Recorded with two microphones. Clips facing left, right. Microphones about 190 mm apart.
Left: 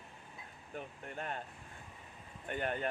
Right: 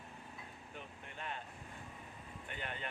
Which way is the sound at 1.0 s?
45° left (ahead or behind).